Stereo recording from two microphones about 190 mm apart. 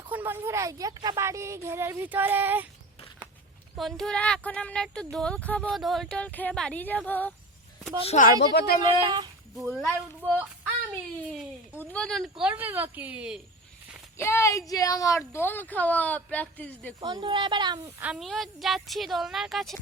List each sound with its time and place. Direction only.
0.1 s speech: 10° right (ahead or behind)
3.8 s a woman's voice: centre (ahead or behind)
8.0 s speech: 35° left (ahead or behind)
8.5 s speech: 55° left (ahead or behind)
9.0 s a woman's voice: 20° right (ahead or behind)
9.8 s a woman's voice: 5° left (ahead or behind)
11.7 s a woman's voice: 10° left (ahead or behind)
14.2 s speech: 15° left (ahead or behind)
17.0 s a woman's voice: 25° right (ahead or behind)
18.0 s a woman's voice: centre (ahead or behind)